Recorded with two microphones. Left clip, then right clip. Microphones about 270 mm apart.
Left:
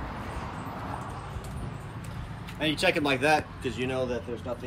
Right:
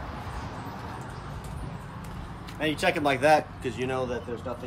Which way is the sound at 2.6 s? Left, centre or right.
Centre.